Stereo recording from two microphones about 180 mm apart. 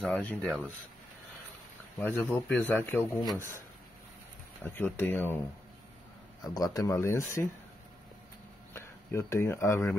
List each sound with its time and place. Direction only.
0.0 s a man's voice: 5° left (ahead or behind)
2.0 s a man's voice: 10° left (ahead or behind)
4.6 s a man's voice: 10° left (ahead or behind)
6.4 s speech: 20° left (ahead or behind)
8.7 s speech: 15° left (ahead or behind)